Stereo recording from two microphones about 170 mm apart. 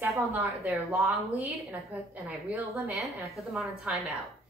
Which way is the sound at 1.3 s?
10° right (ahead or behind).